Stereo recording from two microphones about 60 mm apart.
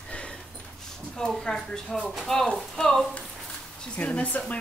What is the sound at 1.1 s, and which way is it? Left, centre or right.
Speech, centre.